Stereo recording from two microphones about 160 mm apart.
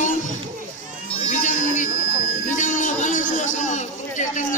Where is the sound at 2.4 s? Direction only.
55° left (ahead or behind).